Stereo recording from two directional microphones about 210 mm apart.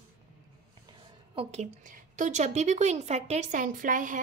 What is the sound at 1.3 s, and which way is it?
A woman's voice, 30° right (ahead or behind).